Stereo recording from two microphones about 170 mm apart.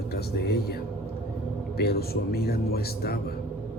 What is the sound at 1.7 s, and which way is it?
A man's voice, 65° left (ahead or behind).